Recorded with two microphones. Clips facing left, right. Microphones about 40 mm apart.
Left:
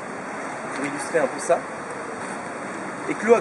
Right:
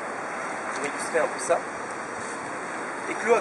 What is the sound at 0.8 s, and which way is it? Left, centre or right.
Speech, centre.